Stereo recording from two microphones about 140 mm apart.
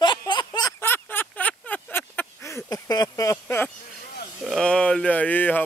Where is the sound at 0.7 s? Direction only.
15° left (ahead or behind).